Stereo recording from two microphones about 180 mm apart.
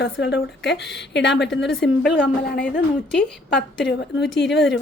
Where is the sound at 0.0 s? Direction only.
75° left (ahead or behind).